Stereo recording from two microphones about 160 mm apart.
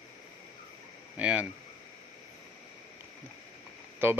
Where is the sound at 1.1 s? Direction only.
10° right (ahead or behind).